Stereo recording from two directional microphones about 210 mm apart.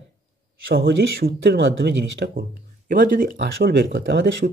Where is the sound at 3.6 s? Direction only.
55° right (ahead or behind).